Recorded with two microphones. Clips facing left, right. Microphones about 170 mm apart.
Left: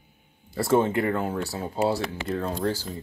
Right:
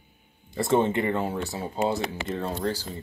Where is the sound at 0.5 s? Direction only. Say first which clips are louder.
Left 1 dB; centre (ahead or behind).